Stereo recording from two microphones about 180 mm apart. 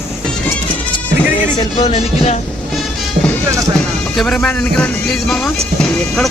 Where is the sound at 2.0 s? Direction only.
40° left (ahead or behind).